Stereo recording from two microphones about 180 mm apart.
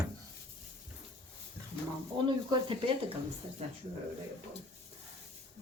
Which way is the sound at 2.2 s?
25° right (ahead or behind).